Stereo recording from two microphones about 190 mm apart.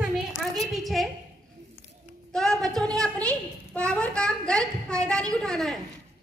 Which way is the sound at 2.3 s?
5° left (ahead or behind).